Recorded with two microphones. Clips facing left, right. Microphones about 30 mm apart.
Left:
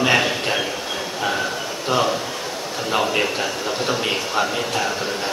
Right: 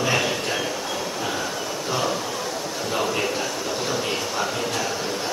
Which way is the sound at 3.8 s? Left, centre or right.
Left.